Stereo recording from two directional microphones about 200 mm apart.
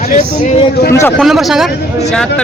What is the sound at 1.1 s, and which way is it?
Speech, centre (ahead or behind).